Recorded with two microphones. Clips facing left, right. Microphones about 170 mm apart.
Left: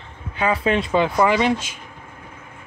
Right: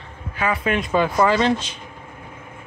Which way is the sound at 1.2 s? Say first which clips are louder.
Even; 15° left (ahead or behind).